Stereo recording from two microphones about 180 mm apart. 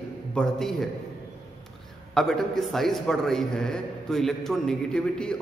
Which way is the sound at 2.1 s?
Centre (ahead or behind).